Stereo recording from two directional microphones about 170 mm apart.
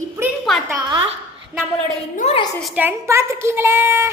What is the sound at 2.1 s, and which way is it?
Speech, 40° left (ahead or behind).